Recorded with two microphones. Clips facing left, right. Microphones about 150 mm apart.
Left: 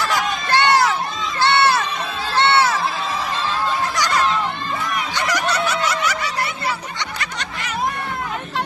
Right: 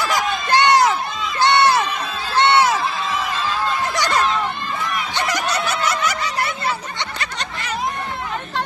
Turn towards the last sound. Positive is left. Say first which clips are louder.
# right 1 dB
turn(degrees=-30)  # may be behind; listen again after turning